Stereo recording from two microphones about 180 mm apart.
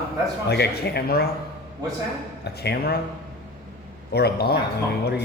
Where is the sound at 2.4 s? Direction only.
65° left (ahead or behind).